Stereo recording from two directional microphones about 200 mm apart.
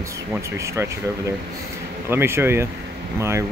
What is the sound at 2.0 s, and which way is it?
Speech, 10° right (ahead or behind).